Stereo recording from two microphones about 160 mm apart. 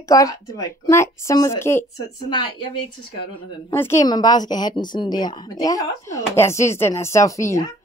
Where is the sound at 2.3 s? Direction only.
30° left (ahead or behind).